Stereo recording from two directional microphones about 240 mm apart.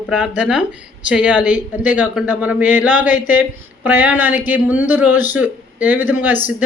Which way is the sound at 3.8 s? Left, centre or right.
Centre.